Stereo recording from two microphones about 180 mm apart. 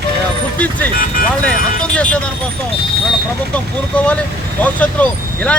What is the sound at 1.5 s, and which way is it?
Speech, 5° left (ahead or behind).